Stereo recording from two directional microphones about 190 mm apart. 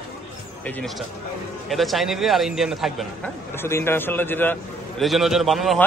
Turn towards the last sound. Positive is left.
turn(degrees=0)  # may be behind; listen again after turning